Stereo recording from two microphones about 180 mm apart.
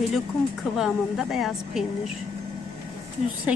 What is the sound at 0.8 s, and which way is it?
Speech, centre (ahead or behind).